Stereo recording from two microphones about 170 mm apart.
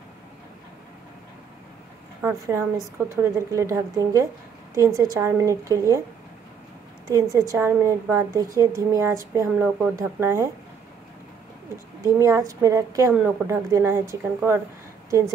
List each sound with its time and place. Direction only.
2.2 s a woman's voice: 15° right (ahead or behind)
7.1 s a woman's voice: 20° right (ahead or behind)
12.0 s a woman's voice: 20° right (ahead or behind)